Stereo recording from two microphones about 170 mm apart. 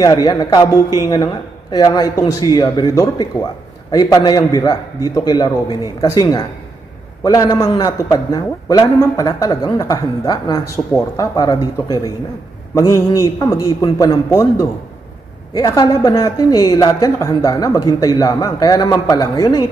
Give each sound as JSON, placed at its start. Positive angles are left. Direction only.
{"t": 0.0, "sound": "a woman's voice", "side_deg": 25}